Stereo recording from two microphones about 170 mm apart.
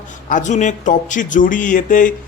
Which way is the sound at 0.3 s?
50° left (ahead or behind).